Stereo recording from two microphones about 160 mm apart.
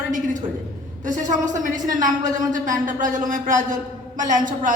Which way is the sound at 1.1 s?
50° right (ahead or behind).